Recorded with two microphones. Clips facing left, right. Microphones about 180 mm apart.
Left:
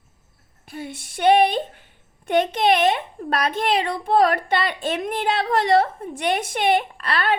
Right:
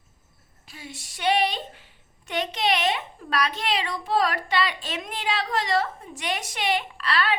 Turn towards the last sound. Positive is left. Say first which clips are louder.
# left 3 dB
turn(degrees=50)  # may be behind; listen again after turning